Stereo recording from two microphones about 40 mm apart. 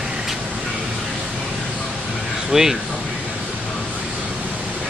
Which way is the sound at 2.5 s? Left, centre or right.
Centre.